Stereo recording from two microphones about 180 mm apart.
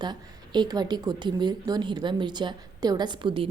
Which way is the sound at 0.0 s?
25° right (ahead or behind).